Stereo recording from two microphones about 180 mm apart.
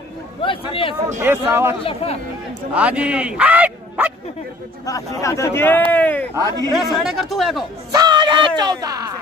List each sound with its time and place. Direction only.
0.4 s a man's voice: 30° left (ahead or behind)
1.2 s a man's voice: 15° right (ahead or behind)
1.9 s speech: 35° left (ahead or behind)
2.7 s speech: 5° right (ahead or behind)
4.8 s speech: 20° left (ahead or behind)
6.3 s speech: 20° right (ahead or behind)
6.7 s speech: centre (ahead or behind)
7.9 s speech: 25° right (ahead or behind)